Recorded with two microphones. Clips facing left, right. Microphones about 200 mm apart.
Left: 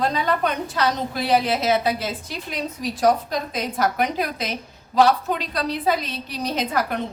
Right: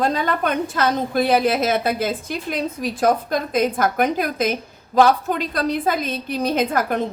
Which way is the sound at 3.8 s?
50° right (ahead or behind).